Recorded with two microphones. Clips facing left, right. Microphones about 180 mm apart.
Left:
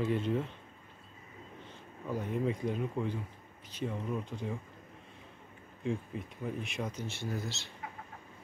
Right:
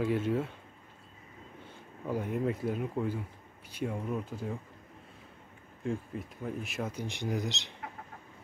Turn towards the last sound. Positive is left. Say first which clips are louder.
# right 4 dB
turn(degrees=-20)  # may be behind; listen again after turning